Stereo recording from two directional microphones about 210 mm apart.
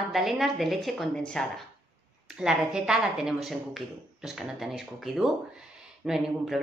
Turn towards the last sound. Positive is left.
turn(degrees=0)  # may be behind; listen again after turning